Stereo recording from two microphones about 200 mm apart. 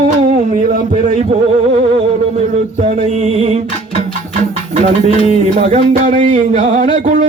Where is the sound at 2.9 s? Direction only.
35° right (ahead or behind).